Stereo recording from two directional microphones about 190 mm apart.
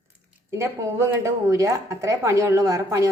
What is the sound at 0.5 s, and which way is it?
Speech, 15° right (ahead or behind).